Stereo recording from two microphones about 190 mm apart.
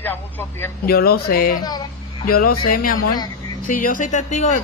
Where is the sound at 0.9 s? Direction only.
55° left (ahead or behind).